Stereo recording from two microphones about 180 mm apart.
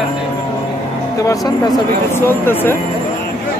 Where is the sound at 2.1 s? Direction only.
10° left (ahead or behind).